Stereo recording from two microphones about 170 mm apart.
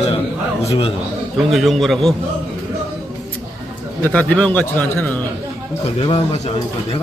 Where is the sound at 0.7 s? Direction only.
35° left (ahead or behind).